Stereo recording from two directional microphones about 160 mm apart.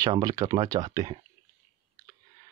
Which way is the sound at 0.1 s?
25° right (ahead or behind).